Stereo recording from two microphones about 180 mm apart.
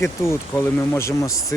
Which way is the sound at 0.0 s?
15° left (ahead or behind).